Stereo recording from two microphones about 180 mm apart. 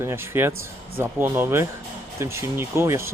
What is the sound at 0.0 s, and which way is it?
Speech, 15° right (ahead or behind).